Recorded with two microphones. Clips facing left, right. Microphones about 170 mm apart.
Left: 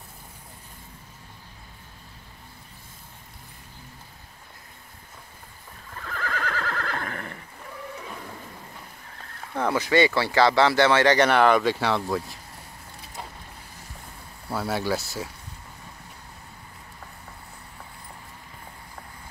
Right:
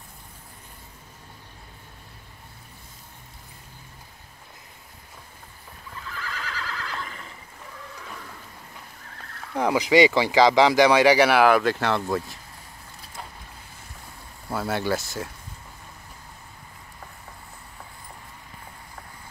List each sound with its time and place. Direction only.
6.0 s neigh: 55° left (ahead or behind)
9.6 s speech: 15° right (ahead or behind)
14.5 s speech: centre (ahead or behind)